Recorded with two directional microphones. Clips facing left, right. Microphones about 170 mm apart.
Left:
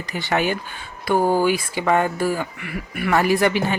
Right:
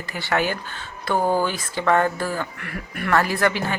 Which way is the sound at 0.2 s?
15° left (ahead or behind).